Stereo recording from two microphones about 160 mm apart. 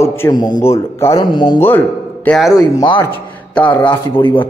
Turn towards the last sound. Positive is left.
turn(degrees=10)  # may be behind; listen again after turning